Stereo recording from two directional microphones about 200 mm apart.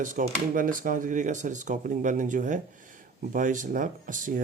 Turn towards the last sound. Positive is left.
turn(degrees=-40)  # may be behind; listen again after turning